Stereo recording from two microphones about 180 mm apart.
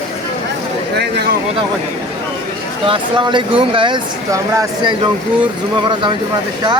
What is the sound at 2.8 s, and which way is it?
Speech, 25° right (ahead or behind).